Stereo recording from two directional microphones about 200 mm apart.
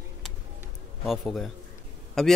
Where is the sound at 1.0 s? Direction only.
Centre (ahead or behind).